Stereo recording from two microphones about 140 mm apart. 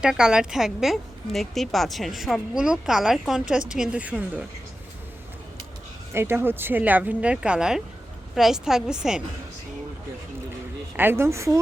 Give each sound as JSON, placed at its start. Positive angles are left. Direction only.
{"t": 0.0, "sound": "a woman's voice", "side_deg": -5}
{"t": 6.1, "sound": "a woman's voice", "side_deg": -15}
{"t": 10.9, "sound": "a woman's voice", "side_deg": -15}